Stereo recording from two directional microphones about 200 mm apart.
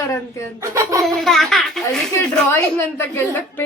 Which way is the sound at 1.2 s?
Centre (ahead or behind).